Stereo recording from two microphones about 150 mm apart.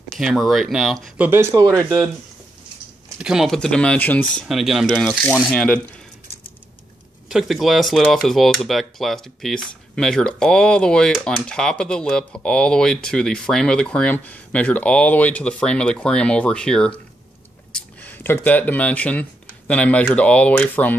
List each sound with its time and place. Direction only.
0.2 s speech: centre (ahead or behind)
1.1 s speech: 15° right (ahead or behind)
3.2 s speech: 5° right (ahead or behind)
7.2 s speech: centre (ahead or behind)